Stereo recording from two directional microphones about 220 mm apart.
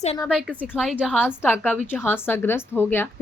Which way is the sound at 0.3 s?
Centre (ahead or behind).